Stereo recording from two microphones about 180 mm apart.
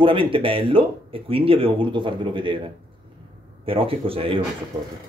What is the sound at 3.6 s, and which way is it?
Speech, 30° right (ahead or behind).